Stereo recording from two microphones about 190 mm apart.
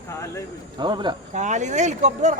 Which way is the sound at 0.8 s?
25° right (ahead or behind).